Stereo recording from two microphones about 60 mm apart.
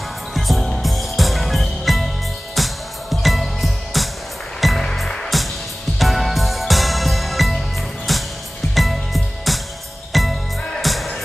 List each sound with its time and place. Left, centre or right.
0.3 s music: centre